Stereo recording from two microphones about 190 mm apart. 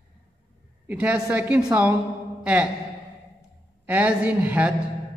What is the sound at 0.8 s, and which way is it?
A woman's voice, 5° right (ahead or behind).